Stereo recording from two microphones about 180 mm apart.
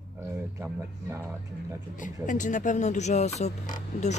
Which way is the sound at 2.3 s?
45° left (ahead or behind).